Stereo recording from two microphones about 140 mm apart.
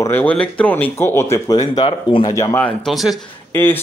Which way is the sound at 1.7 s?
35° left (ahead or behind).